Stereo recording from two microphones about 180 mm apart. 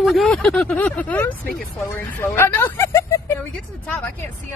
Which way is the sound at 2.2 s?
15° left (ahead or behind).